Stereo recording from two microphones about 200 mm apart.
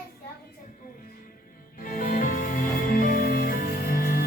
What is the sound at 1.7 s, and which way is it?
Music, 45° left (ahead or behind).